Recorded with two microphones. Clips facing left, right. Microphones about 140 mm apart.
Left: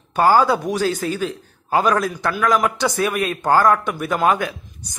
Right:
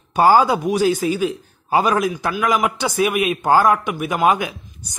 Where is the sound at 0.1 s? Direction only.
15° right (ahead or behind).